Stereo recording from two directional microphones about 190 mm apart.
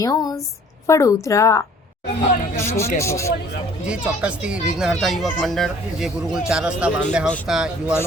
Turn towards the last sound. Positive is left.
turn(degrees=-5)  # may be behind; listen again after turning